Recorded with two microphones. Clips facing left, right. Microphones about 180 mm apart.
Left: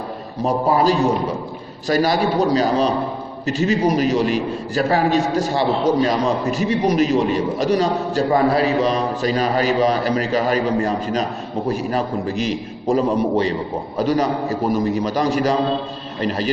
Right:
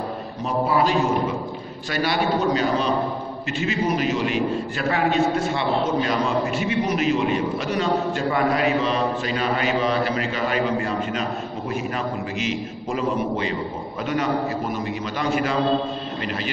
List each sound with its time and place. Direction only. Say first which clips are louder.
0.4 s a man's voice: left 4 dB; 40° left (ahead or behind)